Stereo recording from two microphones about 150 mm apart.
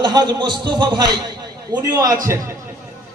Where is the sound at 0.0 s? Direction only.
30° right (ahead or behind).